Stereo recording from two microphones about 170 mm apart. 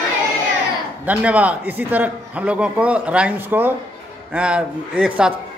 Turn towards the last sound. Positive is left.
turn(degrees=-5)  # may be behind; listen again after turning